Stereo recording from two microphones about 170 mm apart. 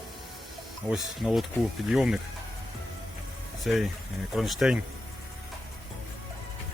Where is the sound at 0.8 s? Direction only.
Centre (ahead or behind).